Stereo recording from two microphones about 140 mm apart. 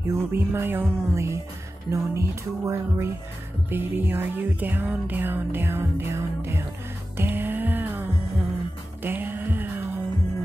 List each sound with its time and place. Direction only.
0.0 s music: 20° right (ahead or behind)